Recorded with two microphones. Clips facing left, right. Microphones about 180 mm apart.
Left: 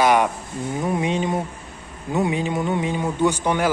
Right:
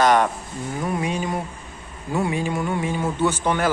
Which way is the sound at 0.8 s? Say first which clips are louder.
Left 3 dB; 20° left (ahead or behind).